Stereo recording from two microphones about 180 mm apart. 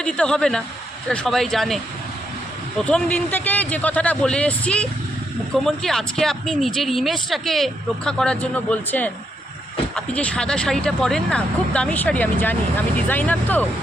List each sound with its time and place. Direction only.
0.0 s speech: 5° left (ahead or behind)
2.8 s speech: 5° left (ahead or behind)